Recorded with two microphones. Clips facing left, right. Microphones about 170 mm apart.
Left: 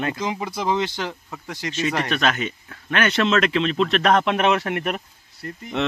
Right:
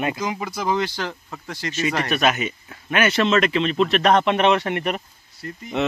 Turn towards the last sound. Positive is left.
turn(degrees=0)  # may be behind; listen again after turning